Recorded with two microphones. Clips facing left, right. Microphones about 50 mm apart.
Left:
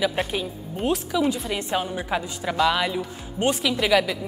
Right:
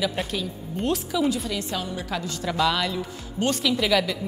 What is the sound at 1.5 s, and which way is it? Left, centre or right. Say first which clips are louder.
A woman's voice: left 3 dB; left.